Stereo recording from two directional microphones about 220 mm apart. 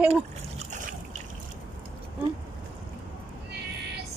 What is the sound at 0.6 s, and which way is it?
Trickle, 35° right (ahead or behind).